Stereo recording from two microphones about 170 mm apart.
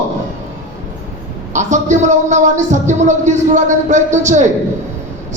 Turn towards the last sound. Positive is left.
turn(degrees=-45)  # may be behind; listen again after turning